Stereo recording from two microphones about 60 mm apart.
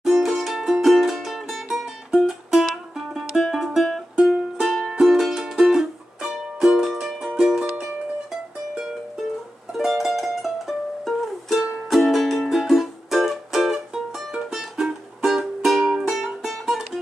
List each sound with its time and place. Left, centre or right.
0.0 s music: centre